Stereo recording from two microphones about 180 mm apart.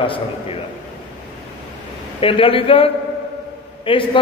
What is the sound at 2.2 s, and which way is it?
A man's voice, 30° left (ahead or behind).